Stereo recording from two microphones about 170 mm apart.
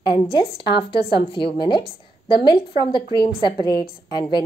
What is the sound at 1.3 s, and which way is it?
Speech, 30° left (ahead or behind).